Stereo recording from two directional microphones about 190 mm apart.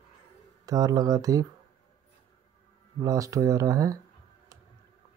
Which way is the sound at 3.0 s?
20° right (ahead or behind).